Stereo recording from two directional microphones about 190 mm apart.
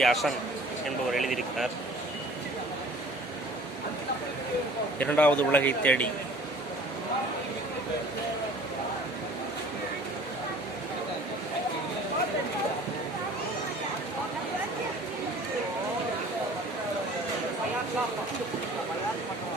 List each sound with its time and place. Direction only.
0.0 s a man's voice: centre (ahead or behind)
4.9 s speech: 5° left (ahead or behind)